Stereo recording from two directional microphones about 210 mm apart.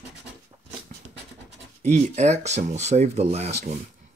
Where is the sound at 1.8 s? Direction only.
35° right (ahead or behind).